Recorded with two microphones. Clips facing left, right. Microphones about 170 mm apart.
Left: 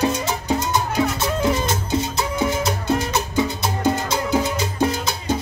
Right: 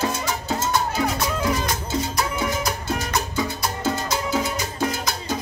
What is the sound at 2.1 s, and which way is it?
Music, 25° left (ahead or behind).